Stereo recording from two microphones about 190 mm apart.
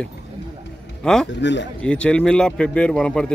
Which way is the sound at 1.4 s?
70° left (ahead or behind).